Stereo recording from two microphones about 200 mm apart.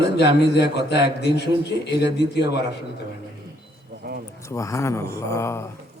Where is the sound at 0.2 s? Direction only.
60° left (ahead or behind).